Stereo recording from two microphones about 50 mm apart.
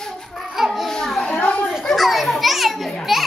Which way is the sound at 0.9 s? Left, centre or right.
Centre.